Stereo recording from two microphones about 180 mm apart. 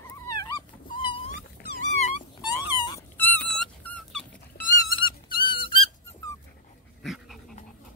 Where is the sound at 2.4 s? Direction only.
25° left (ahead or behind).